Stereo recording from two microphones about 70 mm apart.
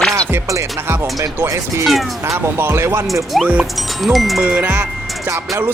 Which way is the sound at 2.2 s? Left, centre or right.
Right.